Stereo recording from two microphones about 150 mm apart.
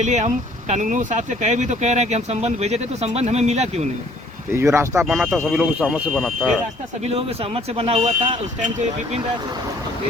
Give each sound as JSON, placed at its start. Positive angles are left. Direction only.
{"t": 0.0, "sound": "speech", "side_deg": -50}
{"t": 4.5, "sound": "speech", "side_deg": -15}
{"t": 4.9, "sound": "speech", "side_deg": -5}
{"t": 7.1, "sound": "speech", "side_deg": -40}